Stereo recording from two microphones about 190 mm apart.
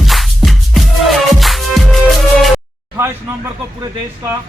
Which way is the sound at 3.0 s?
15° right (ahead or behind).